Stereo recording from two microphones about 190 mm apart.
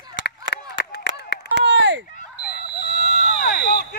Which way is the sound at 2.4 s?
50° left (ahead or behind).